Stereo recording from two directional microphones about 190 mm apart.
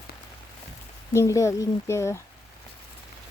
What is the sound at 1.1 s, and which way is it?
Speech, 15° left (ahead or behind).